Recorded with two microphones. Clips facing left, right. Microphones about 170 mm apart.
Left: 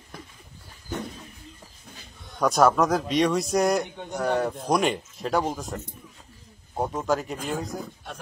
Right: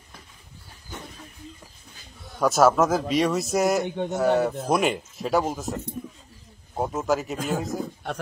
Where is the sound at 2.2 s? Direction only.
Centre (ahead or behind).